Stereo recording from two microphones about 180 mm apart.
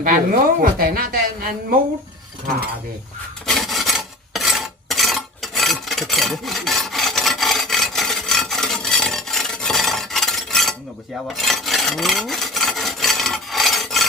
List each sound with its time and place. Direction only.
0.6 s speech: 55° right (ahead or behind)
3.4 s filing: centre (ahead or behind)
11.3 s rub: centre (ahead or behind)